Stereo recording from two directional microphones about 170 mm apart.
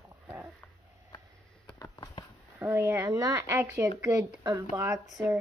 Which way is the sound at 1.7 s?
20° left (ahead or behind).